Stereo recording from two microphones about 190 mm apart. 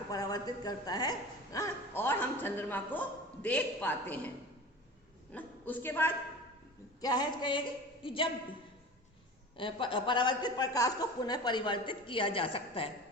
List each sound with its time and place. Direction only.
0.1 s a woman's voice: 20° left (ahead or behind)
5.3 s a man's voice: 10° left (ahead or behind)
7.0 s a woman's voice: 20° left (ahead or behind)
9.6 s a woman's voice: 25° left (ahead or behind)